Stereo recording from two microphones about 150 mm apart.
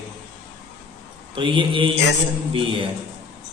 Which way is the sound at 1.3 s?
35° right (ahead or behind).